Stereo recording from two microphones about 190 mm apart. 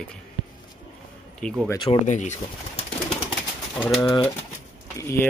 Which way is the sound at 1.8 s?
35° left (ahead or behind).